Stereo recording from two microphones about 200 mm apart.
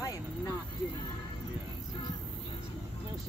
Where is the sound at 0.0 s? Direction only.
20° left (ahead or behind).